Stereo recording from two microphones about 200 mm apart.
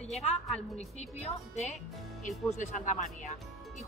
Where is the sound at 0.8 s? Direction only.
35° left (ahead or behind).